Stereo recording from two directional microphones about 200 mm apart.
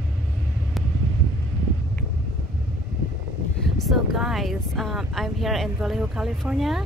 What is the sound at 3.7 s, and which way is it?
Speech, centre (ahead or behind).